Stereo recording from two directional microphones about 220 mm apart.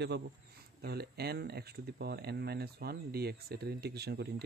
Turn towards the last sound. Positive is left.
turn(degrees=-45)  # may be behind; listen again after turning